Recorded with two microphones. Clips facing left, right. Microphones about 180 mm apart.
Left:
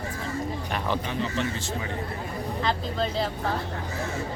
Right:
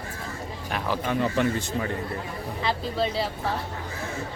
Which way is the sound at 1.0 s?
50° right (ahead or behind).